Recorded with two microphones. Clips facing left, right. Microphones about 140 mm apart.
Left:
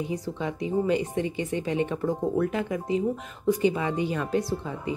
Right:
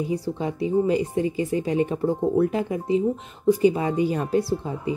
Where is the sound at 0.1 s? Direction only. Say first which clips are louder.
Right 4 dB; 30° right (ahead or behind).